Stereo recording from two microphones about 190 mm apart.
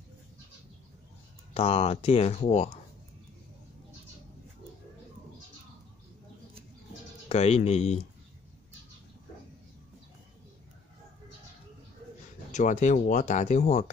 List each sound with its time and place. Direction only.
1.5 s speech: 30° left (ahead or behind)
7.2 s speech: 35° left (ahead or behind)
12.4 s speech: 40° left (ahead or behind)